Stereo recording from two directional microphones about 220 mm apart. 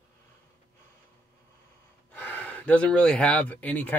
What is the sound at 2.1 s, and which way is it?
Speech, 10° left (ahead or behind).